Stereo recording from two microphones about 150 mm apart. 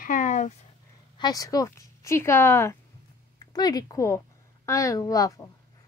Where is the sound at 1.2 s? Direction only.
25° left (ahead or behind).